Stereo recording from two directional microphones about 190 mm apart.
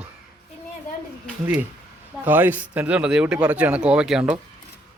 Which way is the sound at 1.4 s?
10° right (ahead or behind).